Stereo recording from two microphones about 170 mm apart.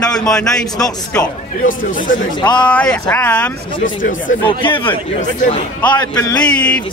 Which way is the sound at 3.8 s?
50° left (ahead or behind).